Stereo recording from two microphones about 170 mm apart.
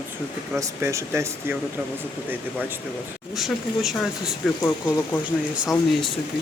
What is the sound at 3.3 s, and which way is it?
Speech, centre (ahead or behind).